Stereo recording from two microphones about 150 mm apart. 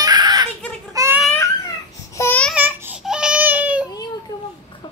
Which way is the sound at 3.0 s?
5° right (ahead or behind).